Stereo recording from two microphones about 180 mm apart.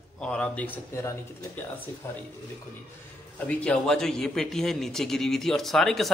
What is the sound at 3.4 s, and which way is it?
Speech, 5° left (ahead or behind).